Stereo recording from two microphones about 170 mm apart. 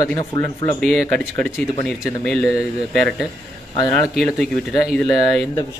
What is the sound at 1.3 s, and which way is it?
Speech, 15° left (ahead or behind).